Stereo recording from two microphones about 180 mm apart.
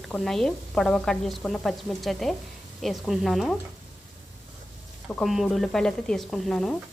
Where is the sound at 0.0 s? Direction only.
Centre (ahead or behind).